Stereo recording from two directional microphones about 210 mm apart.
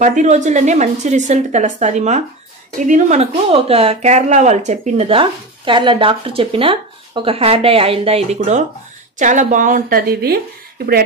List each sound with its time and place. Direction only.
0.0 s a woman's voice: 35° right (ahead or behind)